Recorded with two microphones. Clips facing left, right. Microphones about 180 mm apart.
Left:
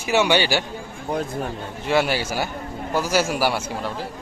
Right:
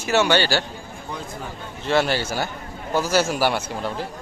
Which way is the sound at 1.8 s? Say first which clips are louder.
Even; 10° left (ahead or behind).